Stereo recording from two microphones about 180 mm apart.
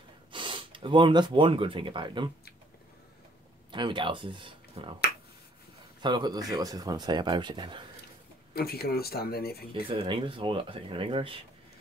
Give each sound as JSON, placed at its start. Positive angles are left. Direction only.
{"t": 0.3, "sound": "speech", "side_deg": -30}
{"t": 3.7, "sound": "speech", "side_deg": -25}
{"t": 6.0, "sound": "speech", "side_deg": -25}
{"t": 8.5, "sound": "speech", "side_deg": 60}
{"t": 9.8, "sound": "speech", "side_deg": -30}